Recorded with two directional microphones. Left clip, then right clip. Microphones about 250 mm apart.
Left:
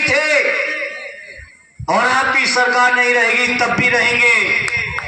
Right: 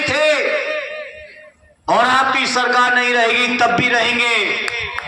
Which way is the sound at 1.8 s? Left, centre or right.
Centre.